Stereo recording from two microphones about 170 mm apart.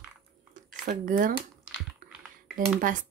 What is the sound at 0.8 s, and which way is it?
Speech, 50° right (ahead or behind).